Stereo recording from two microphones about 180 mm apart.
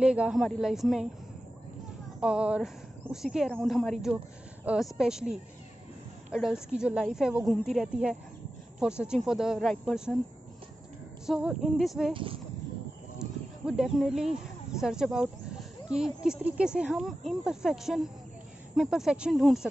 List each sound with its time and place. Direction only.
0.0 s speech: 5° right (ahead or behind)
2.1 s speech: 5° right (ahead or behind)
11.2 s speech: 5° right (ahead or behind)
12.1 s speech: 30° right (ahead or behind)
13.7 s speech: 5° right (ahead or behind)